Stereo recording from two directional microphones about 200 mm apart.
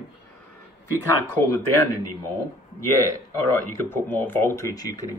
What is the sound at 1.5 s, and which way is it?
Speech, 10° left (ahead or behind).